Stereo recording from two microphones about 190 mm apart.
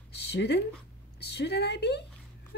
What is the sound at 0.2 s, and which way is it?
A woman's voice, 65° left (ahead or behind).